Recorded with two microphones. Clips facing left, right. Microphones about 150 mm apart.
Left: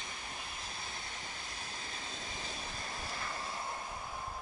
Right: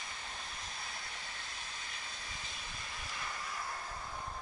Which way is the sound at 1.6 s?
35° left (ahead or behind).